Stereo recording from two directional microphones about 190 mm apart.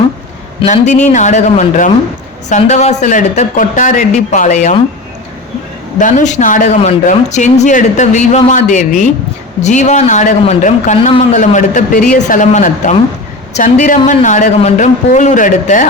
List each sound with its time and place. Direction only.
0.6 s speech: 40° left (ahead or behind)
6.0 s speech: 40° left (ahead or behind)